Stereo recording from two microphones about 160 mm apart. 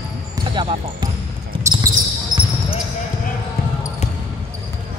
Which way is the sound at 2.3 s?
60° right (ahead or behind).